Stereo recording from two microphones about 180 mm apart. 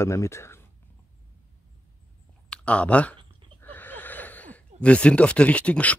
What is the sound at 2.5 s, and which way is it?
Speech, 5° left (ahead or behind).